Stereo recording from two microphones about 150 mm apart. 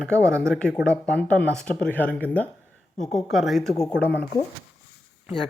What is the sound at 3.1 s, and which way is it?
Speech, centre (ahead or behind).